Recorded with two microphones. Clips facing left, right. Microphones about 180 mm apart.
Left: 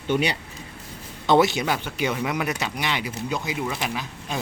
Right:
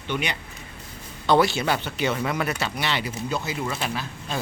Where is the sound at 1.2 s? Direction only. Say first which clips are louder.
Left 1 dB; 20° left (ahead or behind).